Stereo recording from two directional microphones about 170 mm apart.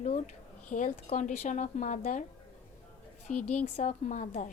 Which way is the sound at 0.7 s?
45° left (ahead or behind).